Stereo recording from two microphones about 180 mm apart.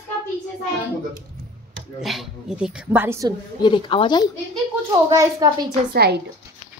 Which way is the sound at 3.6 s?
25° left (ahead or behind).